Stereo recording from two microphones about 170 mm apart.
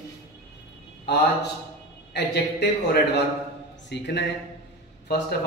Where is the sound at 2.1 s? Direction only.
80° left.